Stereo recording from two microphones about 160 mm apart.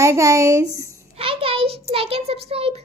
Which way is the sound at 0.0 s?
20° right (ahead or behind).